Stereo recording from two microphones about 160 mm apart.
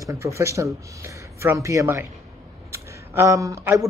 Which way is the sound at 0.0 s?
20° right (ahead or behind).